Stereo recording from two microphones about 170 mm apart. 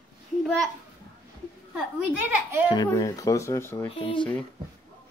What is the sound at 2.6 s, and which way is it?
Speech, 20° left (ahead or behind).